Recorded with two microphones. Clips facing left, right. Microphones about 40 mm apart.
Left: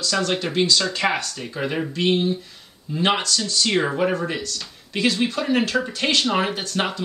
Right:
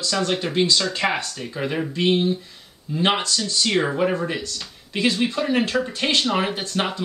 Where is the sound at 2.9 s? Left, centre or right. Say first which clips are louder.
Right 1 dB; centre.